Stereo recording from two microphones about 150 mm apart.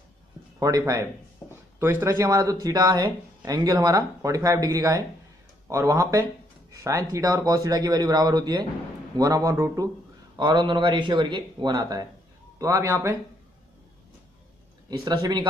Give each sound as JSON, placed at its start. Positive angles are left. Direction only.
{"t": 0.6, "sound": "speech", "side_deg": -25}
{"t": 14.9, "sound": "speech", "side_deg": -30}